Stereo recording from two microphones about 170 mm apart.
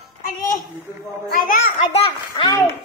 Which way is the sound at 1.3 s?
50° left (ahead or behind).